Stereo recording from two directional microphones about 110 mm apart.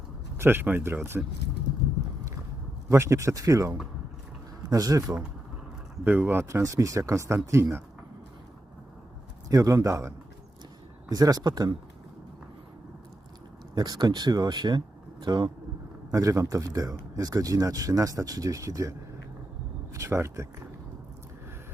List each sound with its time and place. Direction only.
0.3 s speech: 20° right (ahead or behind)
2.9 s speech: 30° right (ahead or behind)
6.1 s speech: 20° right (ahead or behind)
9.5 s speech: 30° right (ahead or behind)
11.1 s speech: 35° right (ahead or behind)
13.7 s speech: 40° right (ahead or behind)
16.1 s speech: 30° right (ahead or behind)